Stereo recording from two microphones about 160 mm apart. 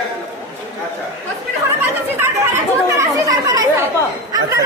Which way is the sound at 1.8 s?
15° right (ahead or behind).